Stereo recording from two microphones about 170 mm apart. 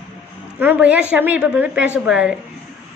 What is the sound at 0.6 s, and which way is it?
A woman's voice, 10° right (ahead or behind).